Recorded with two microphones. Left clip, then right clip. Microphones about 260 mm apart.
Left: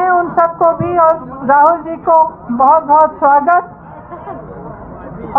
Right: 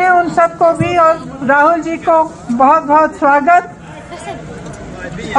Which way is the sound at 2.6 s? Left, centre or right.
Centre.